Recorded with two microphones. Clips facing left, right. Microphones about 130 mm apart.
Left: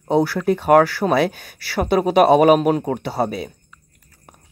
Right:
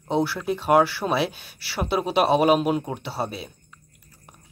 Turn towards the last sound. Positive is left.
turn(degrees=50)  # may be behind; listen again after turning